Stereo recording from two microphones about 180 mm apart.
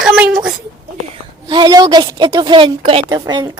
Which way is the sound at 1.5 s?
25° right (ahead or behind).